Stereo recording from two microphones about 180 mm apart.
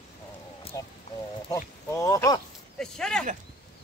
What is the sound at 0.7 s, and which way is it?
Speech, 20° left (ahead or behind).